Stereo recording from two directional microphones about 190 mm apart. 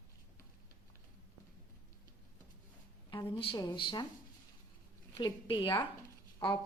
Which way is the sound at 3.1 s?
25° left (ahead or behind).